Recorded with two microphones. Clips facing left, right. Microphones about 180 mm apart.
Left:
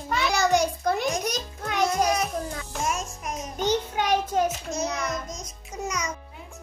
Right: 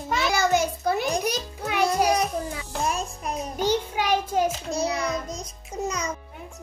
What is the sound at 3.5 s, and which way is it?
Child singing, 10° right (ahead or behind).